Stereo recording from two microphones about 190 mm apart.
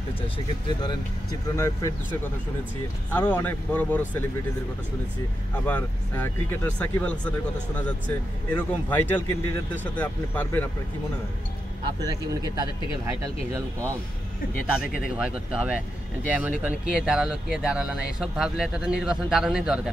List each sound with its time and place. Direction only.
1.6 s speech: 15° left (ahead or behind)
3.1 s speech: 10° left (ahead or behind)
5.7 s speech: 10° left (ahead or behind)
12.0 s speech: 20° right (ahead or behind)
15.1 s speech: 5° right (ahead or behind)